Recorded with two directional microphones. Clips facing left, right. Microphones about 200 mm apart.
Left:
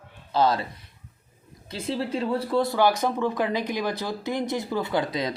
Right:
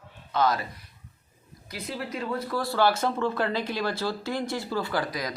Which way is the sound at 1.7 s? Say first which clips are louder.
Left 6 dB; 30° left (ahead or behind).